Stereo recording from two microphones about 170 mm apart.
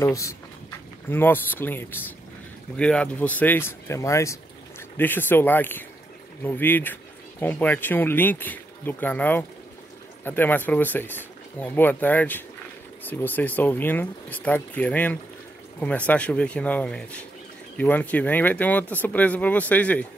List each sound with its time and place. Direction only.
0.0 s speech: 20° left (ahead or behind)